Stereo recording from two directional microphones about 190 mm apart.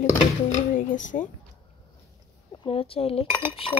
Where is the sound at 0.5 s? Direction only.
40° left (ahead or behind).